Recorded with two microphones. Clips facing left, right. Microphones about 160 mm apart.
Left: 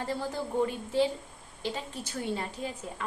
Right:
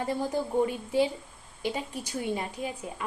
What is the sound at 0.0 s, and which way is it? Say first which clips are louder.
A woman's voice: right 4 dB; 15° right (ahead or behind).